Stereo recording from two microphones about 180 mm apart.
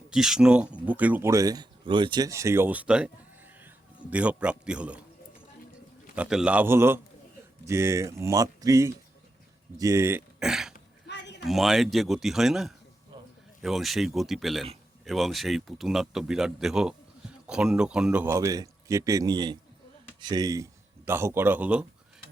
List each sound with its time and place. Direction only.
0.1 s speech: 5° right (ahead or behind)
4.1 s speech: 5° right (ahead or behind)
6.1 s speech: 5° right (ahead or behind)
10.4 s throat clearing: 5° right (ahead or behind)
11.1 s a sound: 75° left (ahead or behind)
11.4 s a man's voice: centre (ahead or behind)